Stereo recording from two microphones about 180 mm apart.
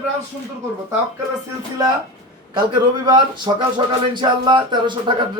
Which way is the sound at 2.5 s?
25° right (ahead or behind).